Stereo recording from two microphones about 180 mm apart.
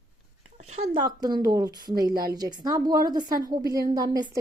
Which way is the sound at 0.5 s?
40° right (ahead or behind).